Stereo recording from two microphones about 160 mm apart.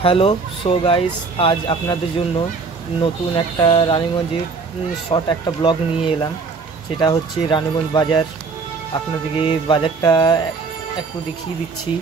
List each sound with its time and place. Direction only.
0.0 s speech: 35° left (ahead or behind)
5.1 s speech: 30° left (ahead or behind)